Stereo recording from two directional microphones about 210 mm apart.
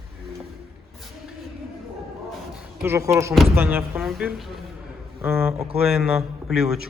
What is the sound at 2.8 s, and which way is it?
A man's voice, 10° right (ahead or behind).